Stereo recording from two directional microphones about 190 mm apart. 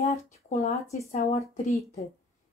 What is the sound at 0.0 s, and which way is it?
Speech, 40° left (ahead or behind).